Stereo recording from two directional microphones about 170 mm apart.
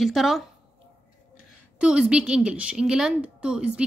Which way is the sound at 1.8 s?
5° right (ahead or behind).